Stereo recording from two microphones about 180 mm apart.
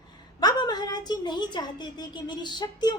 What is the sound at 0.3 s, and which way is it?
A woman's voice, 20° left (ahead or behind).